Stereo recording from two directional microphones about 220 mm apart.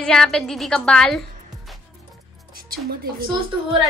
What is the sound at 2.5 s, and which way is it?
Speech, 45° right (ahead or behind).